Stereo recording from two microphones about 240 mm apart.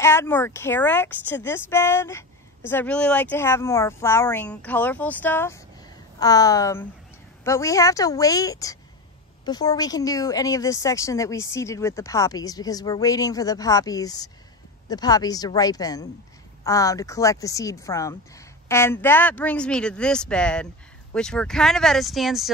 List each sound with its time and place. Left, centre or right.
0.0 s speech: centre